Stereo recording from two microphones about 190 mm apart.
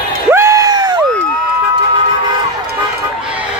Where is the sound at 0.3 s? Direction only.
15° right (ahead or behind).